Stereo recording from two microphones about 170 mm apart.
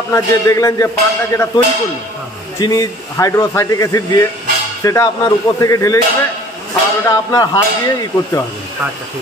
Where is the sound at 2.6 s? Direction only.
20° left (ahead or behind).